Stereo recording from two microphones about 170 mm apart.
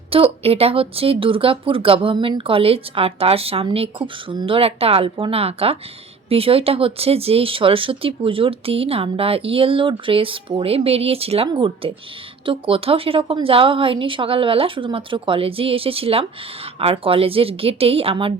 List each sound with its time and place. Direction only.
0.1 s speech: 35° right (ahead or behind)